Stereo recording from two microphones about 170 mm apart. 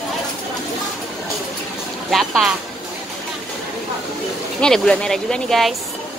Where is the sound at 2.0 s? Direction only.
Centre (ahead or behind).